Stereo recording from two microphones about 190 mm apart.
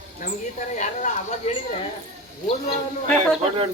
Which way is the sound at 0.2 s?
45° left (ahead or behind).